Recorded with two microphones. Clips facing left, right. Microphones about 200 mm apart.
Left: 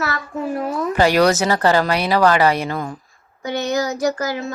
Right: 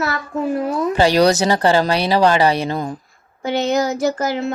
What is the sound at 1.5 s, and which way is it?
Speech, 25° right (ahead or behind).